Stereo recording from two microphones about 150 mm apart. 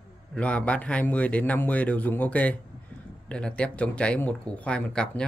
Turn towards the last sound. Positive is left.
turn(degrees=5)  # may be behind; listen again after turning